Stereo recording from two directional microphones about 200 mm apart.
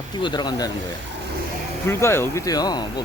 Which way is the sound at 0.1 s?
20° left (ahead or behind).